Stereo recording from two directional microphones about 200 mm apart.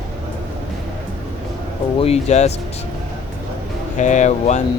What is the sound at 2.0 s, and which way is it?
Speech, 30° left (ahead or behind).